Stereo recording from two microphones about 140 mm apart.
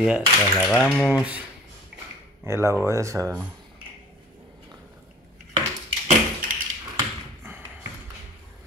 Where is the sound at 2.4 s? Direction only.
20° right (ahead or behind).